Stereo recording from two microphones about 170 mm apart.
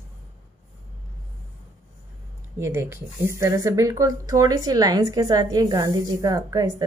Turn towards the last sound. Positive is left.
turn(degrees=-20)  # may be behind; listen again after turning